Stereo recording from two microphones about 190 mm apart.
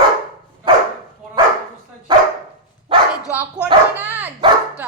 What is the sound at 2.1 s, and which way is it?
Dog, 25° right (ahead or behind).